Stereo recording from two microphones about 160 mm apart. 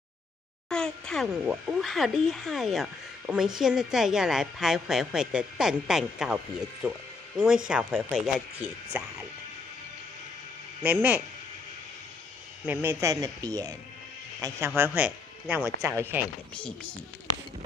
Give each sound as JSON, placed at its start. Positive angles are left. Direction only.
{"t": 0.7, "sound": "speech", "side_deg": 5}
{"t": 10.8, "sound": "speech", "side_deg": -10}
{"t": 12.6, "sound": "speech", "side_deg": -15}
{"t": 14.8, "sound": "speech", "side_deg": -10}
{"t": 16.5, "sound": "speech", "side_deg": 5}